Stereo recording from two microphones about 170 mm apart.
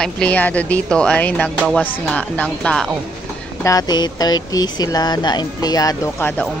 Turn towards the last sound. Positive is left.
turn(degrees=20)  # may be behind; listen again after turning